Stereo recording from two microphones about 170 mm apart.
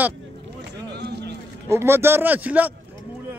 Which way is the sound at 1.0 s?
75° right (ahead or behind).